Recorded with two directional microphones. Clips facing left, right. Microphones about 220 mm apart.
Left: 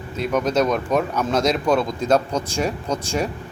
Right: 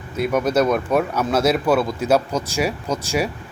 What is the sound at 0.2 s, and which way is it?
Speech, 10° right (ahead or behind).